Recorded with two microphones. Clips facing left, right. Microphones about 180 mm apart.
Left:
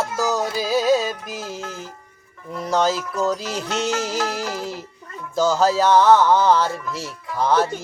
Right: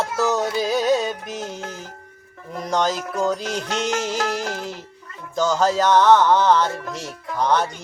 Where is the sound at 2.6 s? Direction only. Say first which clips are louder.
Left 2 dB; 5° left (ahead or behind).